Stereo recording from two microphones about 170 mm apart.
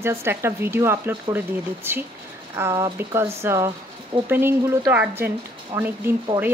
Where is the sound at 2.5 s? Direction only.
15° right (ahead or behind).